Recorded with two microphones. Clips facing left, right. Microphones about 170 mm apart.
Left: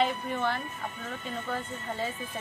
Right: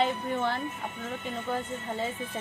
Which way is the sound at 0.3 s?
25° right (ahead or behind).